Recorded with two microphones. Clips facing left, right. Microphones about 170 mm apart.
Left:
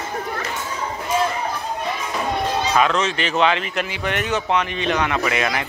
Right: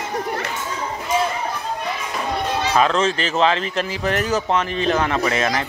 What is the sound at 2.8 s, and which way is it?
Speech, 35° right (ahead or behind).